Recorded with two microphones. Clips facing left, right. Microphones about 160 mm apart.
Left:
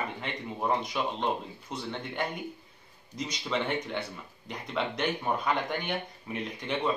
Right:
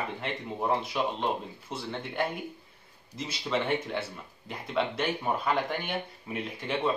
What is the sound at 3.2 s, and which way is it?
A man's voice, 5° right (ahead or behind).